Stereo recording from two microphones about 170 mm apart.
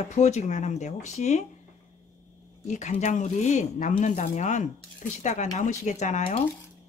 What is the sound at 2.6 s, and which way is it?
Speech, 45° left (ahead or behind).